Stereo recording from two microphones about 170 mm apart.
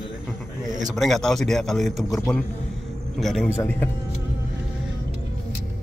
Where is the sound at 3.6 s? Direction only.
10° left (ahead or behind).